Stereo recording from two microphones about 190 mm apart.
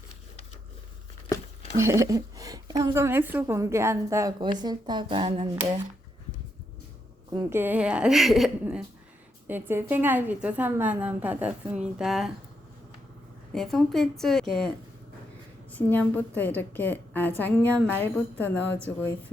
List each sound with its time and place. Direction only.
1.8 s a woman's voice: 15° right (ahead or behind)
7.3 s a woman's voice: 10° right (ahead or behind)
9.5 s a woman's voice: 10° right (ahead or behind)
13.5 s a woman's voice: centre (ahead or behind)
15.7 s a woman's voice: 10° left (ahead or behind)